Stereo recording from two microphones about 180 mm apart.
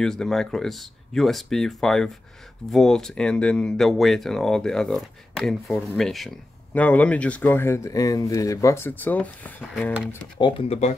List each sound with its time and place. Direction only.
0.0 s speech: 5° left (ahead or behind)
10.4 s speech: 35° left (ahead or behind)